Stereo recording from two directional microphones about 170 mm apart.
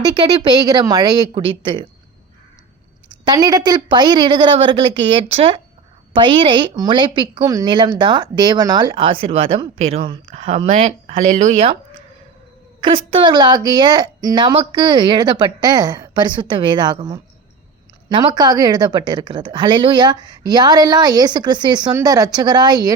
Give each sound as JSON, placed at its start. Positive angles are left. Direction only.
{"t": 0.0, "sound": "a woman's voice", "side_deg": -25}
{"t": 1.3, "sound": "speech", "side_deg": -30}
{"t": 3.2, "sound": "a woman's voice", "side_deg": -20}
{"t": 12.8, "sound": "a woman's voice", "side_deg": -30}